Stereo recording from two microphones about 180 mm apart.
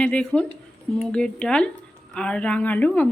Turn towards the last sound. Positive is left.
turn(degrees=10)  # may be behind; listen again after turning